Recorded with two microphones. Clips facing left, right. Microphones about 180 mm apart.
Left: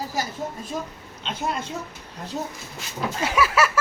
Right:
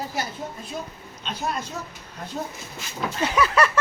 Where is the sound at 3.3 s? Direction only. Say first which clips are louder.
Even; 5° left (ahead or behind).